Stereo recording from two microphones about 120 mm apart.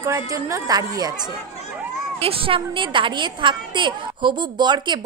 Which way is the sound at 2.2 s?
50° right (ahead or behind).